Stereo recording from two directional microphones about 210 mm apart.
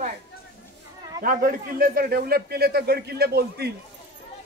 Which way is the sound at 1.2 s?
40° right (ahead or behind).